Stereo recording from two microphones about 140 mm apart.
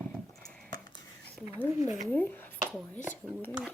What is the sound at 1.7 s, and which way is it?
Speech, 25° right (ahead or behind).